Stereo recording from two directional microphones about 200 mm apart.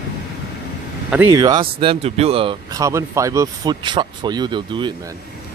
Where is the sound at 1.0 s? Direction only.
10° right (ahead or behind).